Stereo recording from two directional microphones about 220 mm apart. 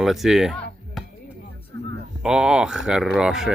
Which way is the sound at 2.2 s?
5° right (ahead or behind).